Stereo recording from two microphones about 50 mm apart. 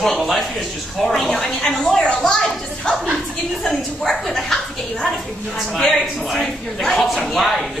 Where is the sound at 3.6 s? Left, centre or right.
Centre.